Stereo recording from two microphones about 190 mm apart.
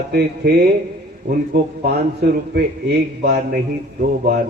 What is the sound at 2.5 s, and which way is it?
Speech, 55° right (ahead or behind).